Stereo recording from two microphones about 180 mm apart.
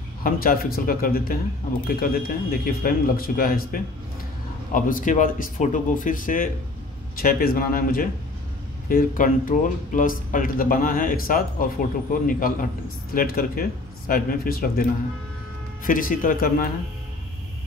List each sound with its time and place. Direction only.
0.2 s a man's voice: 55° left (ahead or behind)